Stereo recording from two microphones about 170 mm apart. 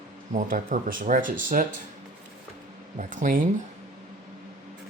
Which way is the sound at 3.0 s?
50° right (ahead or behind).